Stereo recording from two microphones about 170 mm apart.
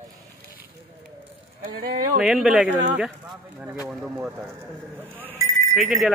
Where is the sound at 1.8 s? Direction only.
60° right (ahead or behind).